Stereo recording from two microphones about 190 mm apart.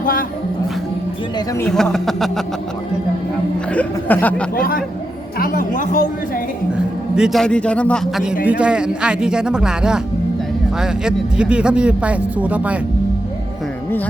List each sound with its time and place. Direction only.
0.0 s music: 50° left (ahead or behind)
1.5 s speech: 5° left (ahead or behind)
3.7 s speech: 10° left (ahead or behind)
4.5 s speech: 50° left (ahead or behind)
7.2 s speech: centre (ahead or behind)